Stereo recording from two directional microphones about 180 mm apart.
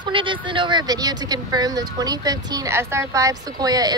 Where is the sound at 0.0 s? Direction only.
30° right (ahead or behind).